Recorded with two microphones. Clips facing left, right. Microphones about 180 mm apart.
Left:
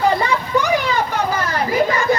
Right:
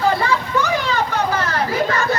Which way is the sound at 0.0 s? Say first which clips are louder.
Left 1 dB; 15° left (ahead or behind).